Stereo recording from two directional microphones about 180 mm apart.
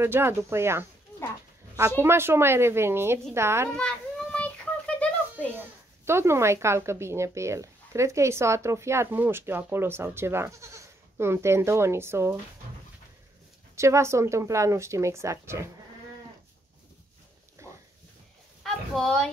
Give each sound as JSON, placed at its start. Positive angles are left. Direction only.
{"t": 0.0, "sound": "speech", "side_deg": -15}
{"t": 2.0, "sound": "speech", "side_deg": -15}
{"t": 3.7, "sound": "a sound", "side_deg": 5}
{"t": 6.0, "sound": "speech", "side_deg": -15}
{"t": 13.7, "sound": "speech", "side_deg": -15}
{"t": 18.6, "sound": "speech", "side_deg": 0}